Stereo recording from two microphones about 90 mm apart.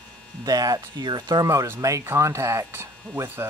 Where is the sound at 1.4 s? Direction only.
30° right (ahead or behind).